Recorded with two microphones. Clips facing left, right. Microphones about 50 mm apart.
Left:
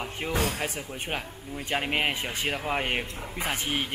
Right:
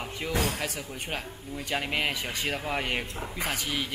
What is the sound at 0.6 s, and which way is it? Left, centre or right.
Speech, left.